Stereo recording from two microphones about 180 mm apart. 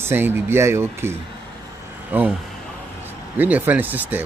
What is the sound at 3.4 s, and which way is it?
Speech, 10° right (ahead or behind).